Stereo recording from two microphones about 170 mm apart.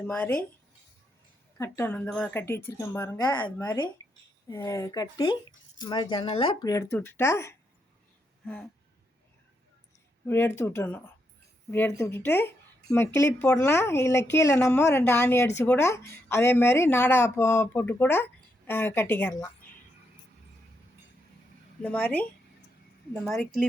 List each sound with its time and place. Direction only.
0.0 s speech: 10° left (ahead or behind)
1.5 s speech: 15° left (ahead or behind)
10.2 s speech: 15° left (ahead or behind)
21.8 s speech: 10° left (ahead or behind)